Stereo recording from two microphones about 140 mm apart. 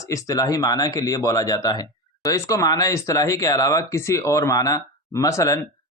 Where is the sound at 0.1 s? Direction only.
25° left (ahead or behind).